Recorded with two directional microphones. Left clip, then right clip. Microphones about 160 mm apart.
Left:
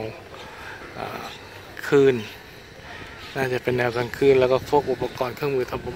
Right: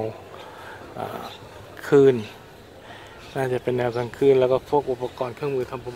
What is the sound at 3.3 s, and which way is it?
Speech, 15° right (ahead or behind).